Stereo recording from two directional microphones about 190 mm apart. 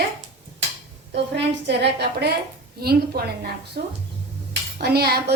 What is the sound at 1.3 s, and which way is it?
A woman's voice, 65° right (ahead or behind).